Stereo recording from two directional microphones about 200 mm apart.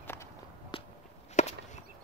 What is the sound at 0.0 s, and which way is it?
Walk, 10° left (ahead or behind).